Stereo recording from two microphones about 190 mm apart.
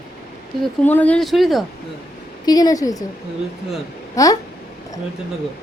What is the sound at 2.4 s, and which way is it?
Speech, 20° left (ahead or behind).